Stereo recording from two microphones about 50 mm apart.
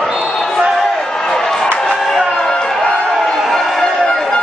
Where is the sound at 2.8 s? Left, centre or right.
Left.